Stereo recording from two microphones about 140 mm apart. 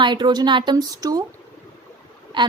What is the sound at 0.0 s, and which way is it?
A woman's voice, 35° right (ahead or behind).